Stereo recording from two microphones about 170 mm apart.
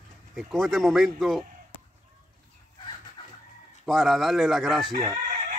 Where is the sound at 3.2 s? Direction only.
25° left (ahead or behind).